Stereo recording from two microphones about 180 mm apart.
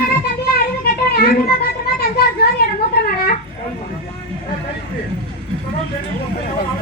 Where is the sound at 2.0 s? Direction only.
55° left (ahead or behind).